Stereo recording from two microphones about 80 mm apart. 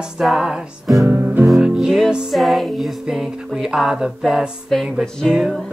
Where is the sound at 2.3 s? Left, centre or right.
Centre.